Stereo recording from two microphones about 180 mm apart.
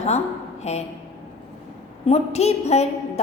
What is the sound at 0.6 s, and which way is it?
Speech, 35° left (ahead or behind).